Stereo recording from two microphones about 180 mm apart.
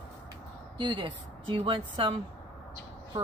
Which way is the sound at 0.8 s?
30° right (ahead or behind).